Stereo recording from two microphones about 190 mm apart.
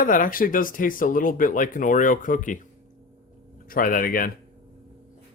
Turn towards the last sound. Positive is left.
turn(degrees=50)  # may be behind; listen again after turning